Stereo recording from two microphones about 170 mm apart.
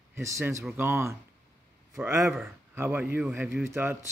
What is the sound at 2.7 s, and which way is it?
A man's voice, 15° right (ahead or behind).